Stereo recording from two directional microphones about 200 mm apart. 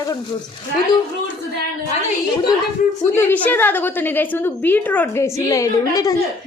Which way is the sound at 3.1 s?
10° left (ahead or behind).